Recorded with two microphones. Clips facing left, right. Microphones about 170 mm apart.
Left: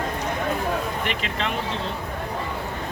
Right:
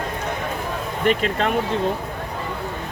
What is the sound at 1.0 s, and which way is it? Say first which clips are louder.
Speech: right 8 dB; 45° right (ahead or behind).